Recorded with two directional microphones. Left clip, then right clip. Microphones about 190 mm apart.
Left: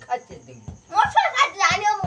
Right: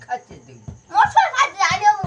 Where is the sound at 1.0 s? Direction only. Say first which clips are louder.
Right 3 dB; 10° left (ahead or behind).